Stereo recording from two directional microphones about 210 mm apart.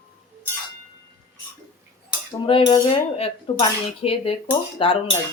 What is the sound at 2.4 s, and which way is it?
Speech, 20° left (ahead or behind).